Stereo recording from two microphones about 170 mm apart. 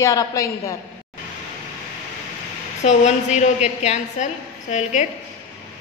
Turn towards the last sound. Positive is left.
turn(degrees=45)  # may be behind; listen again after turning